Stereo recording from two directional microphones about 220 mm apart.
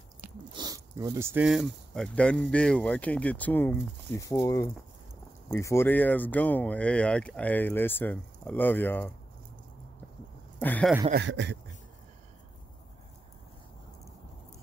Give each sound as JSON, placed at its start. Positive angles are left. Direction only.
{"t": 0.6, "sound": "speech", "side_deg": -15}
{"t": 10.6, "sound": "speech", "side_deg": 10}
{"t": 11.1, "sound": "a man's voice", "side_deg": -50}